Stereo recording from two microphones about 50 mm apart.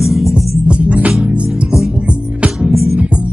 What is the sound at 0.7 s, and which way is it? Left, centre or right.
Music, right.